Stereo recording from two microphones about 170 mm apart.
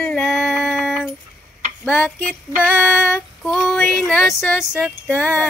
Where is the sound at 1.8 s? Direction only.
10° left (ahead or behind).